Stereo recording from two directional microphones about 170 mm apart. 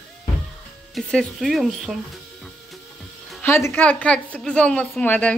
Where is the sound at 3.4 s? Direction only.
15° left (ahead or behind).